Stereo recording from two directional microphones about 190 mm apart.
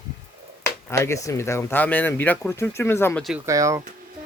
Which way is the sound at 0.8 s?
15° left (ahead or behind).